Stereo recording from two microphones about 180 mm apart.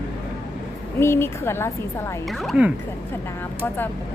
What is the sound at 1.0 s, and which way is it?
A woman's voice, 15° left (ahead or behind).